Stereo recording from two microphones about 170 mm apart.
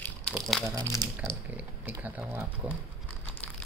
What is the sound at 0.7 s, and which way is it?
Speech, 20° right (ahead or behind).